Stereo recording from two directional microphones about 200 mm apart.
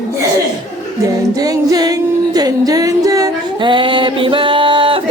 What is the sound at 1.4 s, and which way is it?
Music, 20° right (ahead or behind).